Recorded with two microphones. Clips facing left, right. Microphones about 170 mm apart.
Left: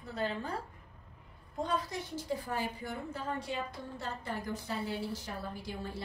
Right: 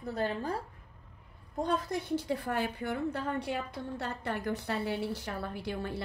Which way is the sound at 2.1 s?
65° right (ahead or behind).